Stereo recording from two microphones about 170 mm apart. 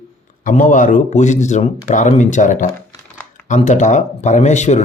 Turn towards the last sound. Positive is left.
turn(degrees=45)  # may be behind; listen again after turning